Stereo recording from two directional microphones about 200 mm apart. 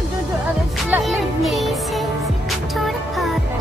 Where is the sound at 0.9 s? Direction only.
Centre (ahead or behind).